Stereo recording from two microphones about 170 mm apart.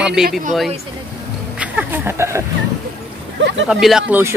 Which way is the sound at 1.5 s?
10° right (ahead or behind).